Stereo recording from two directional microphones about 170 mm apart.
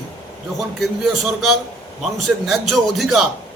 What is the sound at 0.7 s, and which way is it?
A man's voice, centre (ahead or behind).